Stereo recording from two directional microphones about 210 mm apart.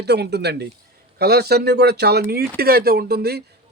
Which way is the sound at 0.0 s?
50° right (ahead or behind).